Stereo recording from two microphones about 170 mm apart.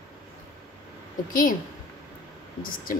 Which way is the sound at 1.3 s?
55° left (ahead or behind).